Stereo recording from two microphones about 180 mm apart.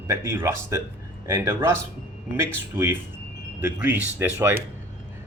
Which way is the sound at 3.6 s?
10° right (ahead or behind).